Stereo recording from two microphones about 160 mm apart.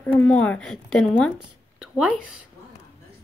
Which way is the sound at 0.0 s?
10° left (ahead or behind).